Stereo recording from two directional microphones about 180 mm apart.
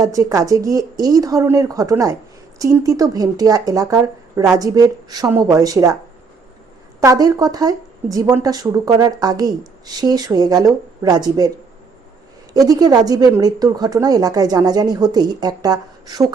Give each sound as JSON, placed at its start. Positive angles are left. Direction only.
{"t": 0.0, "sound": "speech", "side_deg": -20}
{"t": 7.0, "sound": "speech", "side_deg": -20}
{"t": 12.5, "sound": "speech", "side_deg": -20}